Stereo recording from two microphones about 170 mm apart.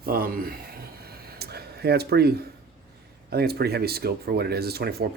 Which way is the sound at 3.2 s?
65° right (ahead or behind).